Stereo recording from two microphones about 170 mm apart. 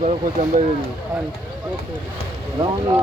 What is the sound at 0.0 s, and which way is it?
Speech, 45° right (ahead or behind).